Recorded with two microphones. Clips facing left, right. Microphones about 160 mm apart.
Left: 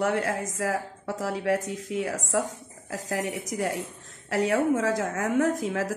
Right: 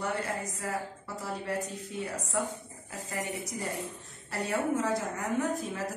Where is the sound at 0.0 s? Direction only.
90° left.